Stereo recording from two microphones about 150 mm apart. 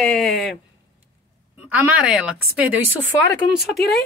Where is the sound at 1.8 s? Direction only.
10° right (ahead or behind).